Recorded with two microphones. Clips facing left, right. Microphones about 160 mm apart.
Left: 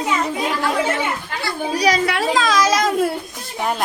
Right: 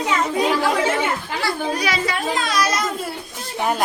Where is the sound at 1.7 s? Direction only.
35° left (ahead or behind).